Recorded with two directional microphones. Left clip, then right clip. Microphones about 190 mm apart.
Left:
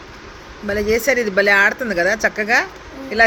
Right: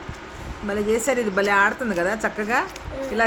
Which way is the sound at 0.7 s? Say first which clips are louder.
Left 5 dB; centre (ahead or behind).